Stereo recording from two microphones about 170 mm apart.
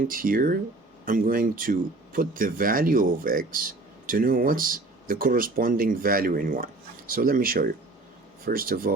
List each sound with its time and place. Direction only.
0.0 s speech: 55° right (ahead or behind)